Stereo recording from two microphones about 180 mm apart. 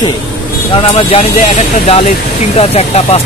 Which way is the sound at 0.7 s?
30° left (ahead or behind).